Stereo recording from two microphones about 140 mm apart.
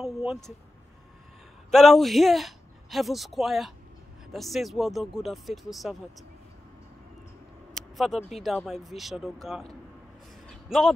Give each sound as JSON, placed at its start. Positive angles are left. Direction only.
{"t": 0.0, "sound": "speech", "side_deg": 0}
{"t": 1.7, "sound": "speech", "side_deg": 0}
{"t": 8.4, "sound": "speech", "side_deg": 0}
{"t": 10.4, "sound": "a sound", "side_deg": 5}